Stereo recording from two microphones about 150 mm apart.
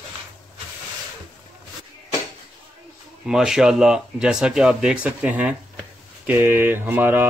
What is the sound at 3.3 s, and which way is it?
Speech, 5° right (ahead or behind).